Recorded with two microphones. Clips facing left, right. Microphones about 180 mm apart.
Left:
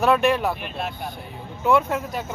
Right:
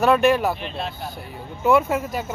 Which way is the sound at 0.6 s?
10° left (ahead or behind).